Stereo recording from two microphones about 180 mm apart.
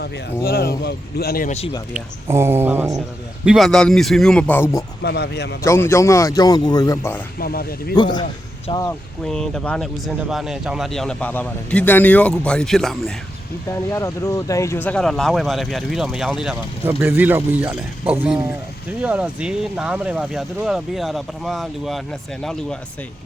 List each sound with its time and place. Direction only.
0.0 s speech: 55° left (ahead or behind)
1.9 s speech: 15° right (ahead or behind)
3.4 s speech: centre (ahead or behind)
5.0 s a man's voice: 70° left (ahead or behind)
5.6 s speech: 15° left (ahead or behind)
7.3 s speech: 55° left (ahead or behind)
7.9 s speech: 25° left (ahead or behind)
9.2 s speech: 5° left (ahead or behind)
13.7 s speech: 15° left (ahead or behind); by 22.0 s centre (ahead or behind)